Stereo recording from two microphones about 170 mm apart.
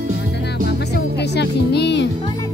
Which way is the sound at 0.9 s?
80° left.